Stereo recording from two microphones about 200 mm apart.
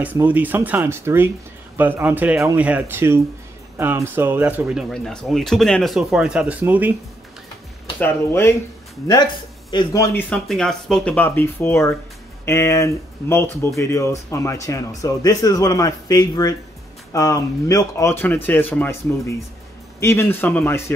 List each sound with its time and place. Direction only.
0.0 s speech: 10° right (ahead or behind)
8.0 s speech: 10° left (ahead or behind)